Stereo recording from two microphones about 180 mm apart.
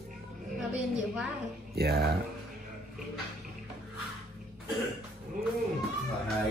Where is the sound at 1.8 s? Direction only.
60° right (ahead or behind).